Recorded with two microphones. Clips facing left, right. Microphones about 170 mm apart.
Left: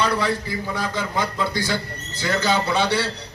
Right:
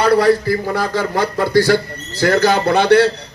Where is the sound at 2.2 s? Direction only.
60° right (ahead or behind).